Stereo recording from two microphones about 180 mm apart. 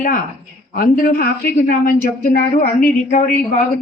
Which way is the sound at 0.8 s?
55° left (ahead or behind).